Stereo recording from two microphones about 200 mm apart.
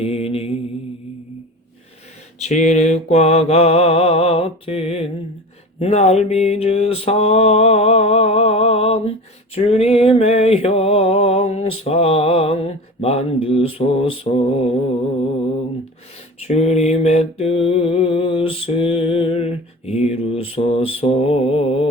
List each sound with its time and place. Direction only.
0.0 s mantra: 30° left (ahead or behind)
2.4 s mantra: 35° left (ahead or behind)
16.5 s mantra: 35° left (ahead or behind)